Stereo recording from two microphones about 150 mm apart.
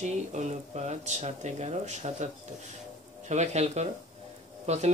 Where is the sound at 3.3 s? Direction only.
50° right (ahead or behind).